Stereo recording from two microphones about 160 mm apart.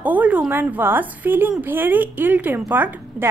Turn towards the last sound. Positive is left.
turn(degrees=-10)  # may be behind; listen again after turning